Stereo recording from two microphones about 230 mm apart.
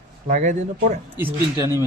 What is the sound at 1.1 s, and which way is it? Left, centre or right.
Speech, centre.